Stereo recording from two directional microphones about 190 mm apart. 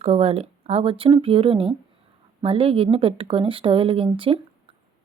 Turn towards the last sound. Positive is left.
turn(degrees=-30)  # may be behind; listen again after turning